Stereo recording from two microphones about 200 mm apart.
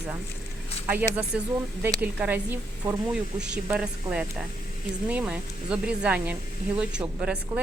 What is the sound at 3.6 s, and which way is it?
Speech, 5° right (ahead or behind).